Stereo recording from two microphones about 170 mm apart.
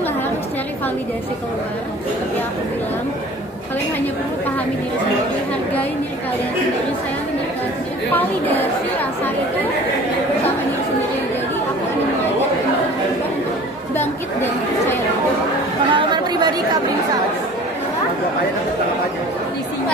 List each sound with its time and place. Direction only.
15.9 s chatter: 25° right (ahead or behind)